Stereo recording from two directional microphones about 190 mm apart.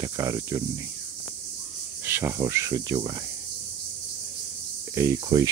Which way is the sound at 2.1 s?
10° right (ahead or behind).